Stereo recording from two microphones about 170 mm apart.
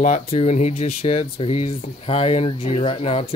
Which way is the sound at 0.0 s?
40° left (ahead or behind).